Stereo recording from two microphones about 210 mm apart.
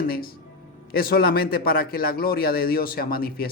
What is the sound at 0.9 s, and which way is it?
A man's voice, 45° left (ahead or behind).